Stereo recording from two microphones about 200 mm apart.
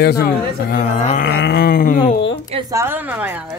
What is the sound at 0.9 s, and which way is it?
Speech, 30° left (ahead or behind).